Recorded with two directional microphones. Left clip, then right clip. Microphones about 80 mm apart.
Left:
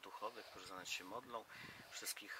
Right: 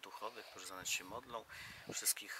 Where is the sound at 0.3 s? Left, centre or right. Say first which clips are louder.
Right 2 dB; centre.